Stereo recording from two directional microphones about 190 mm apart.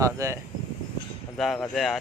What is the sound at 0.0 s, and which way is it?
Speech, 15° right (ahead or behind).